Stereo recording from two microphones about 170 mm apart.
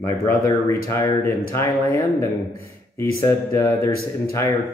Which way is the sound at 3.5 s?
15° left (ahead or behind).